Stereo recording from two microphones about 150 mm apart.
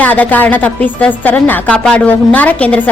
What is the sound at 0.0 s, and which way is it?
A woman's voice, 10° left (ahead or behind).